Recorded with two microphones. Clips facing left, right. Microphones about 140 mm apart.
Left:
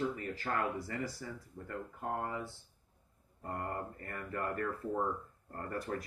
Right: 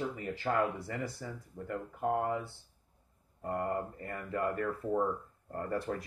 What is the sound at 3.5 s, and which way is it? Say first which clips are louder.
Speech: right 5 dB; 20° right (ahead or behind).